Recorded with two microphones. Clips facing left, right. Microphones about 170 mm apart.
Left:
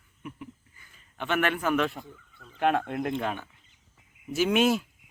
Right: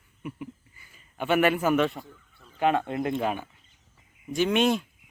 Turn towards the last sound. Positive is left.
turn(degrees=5)  # may be behind; listen again after turning